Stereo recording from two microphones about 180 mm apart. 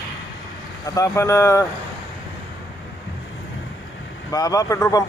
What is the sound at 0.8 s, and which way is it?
Speech, 20° left (ahead or behind).